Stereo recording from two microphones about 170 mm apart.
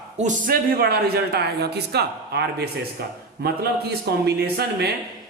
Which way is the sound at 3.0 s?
65° right (ahead or behind).